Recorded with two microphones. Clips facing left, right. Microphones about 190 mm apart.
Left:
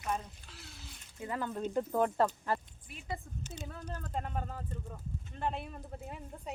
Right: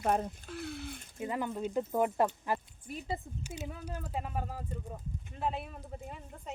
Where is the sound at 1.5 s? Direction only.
5° right (ahead or behind).